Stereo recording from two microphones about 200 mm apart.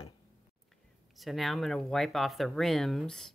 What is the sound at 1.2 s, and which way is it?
Speech, centre (ahead or behind).